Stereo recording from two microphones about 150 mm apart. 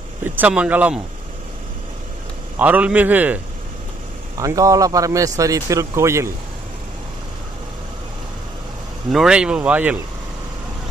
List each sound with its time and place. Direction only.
0.2 s speech: 10° right (ahead or behind)
2.6 s speech: 10° right (ahead or behind)
4.4 s speech: 20° right (ahead or behind)
9.1 s speech: 5° right (ahead or behind)